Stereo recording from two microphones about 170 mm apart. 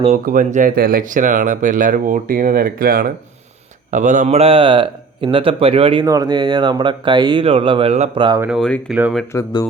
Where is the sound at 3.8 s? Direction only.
45° right (ahead or behind).